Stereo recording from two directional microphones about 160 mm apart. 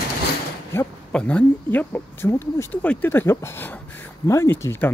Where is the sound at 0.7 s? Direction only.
15° left (ahead or behind).